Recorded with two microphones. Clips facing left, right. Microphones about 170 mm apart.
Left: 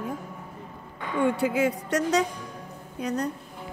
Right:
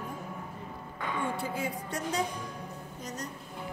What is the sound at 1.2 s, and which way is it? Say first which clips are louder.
A woman's voice: left 12 dB; 80° left.